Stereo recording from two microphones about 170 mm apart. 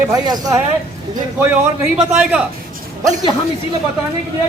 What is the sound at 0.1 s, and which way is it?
Speech, 20° right (ahead or behind).